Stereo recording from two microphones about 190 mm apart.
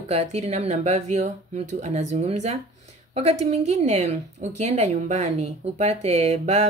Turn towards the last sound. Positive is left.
turn(degrees=-35)  # may be behind; listen again after turning